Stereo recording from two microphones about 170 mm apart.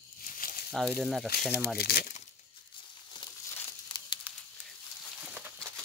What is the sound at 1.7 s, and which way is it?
Speech, 65° left (ahead or behind).